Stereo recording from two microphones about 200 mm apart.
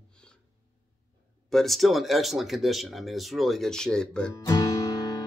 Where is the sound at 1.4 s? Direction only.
Centre (ahead or behind).